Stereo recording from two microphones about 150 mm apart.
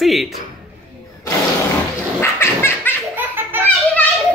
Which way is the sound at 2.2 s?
15° left (ahead or behind).